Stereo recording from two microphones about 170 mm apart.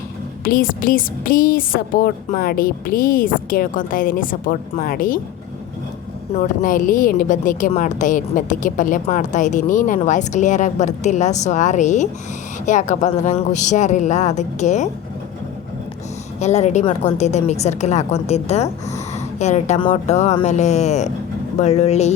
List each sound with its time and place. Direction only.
0.4 s a woman's voice: 55° left (ahead or behind)
6.3 s a woman's voice: 50° left (ahead or behind)
16.4 s a woman's voice: 40° left (ahead or behind)